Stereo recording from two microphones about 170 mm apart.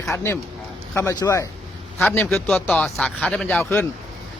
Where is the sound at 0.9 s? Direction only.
20° left (ahead or behind).